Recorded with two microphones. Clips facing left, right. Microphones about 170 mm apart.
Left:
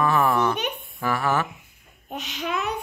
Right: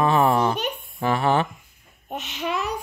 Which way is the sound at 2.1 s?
Centre (ahead or behind).